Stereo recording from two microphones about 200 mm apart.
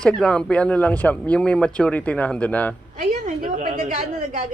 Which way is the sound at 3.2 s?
40° right (ahead or behind).